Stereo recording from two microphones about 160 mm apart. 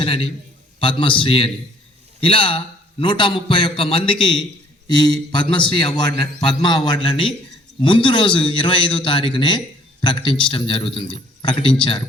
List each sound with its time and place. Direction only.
0.0 s a man's voice: 35° left (ahead or behind)